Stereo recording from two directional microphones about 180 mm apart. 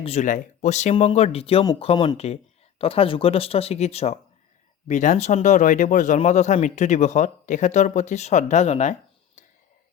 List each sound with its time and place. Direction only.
0.0 s speech: 40° left (ahead or behind)